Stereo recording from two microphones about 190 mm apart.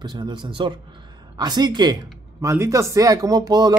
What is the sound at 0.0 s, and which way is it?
Speech, 25° right (ahead or behind).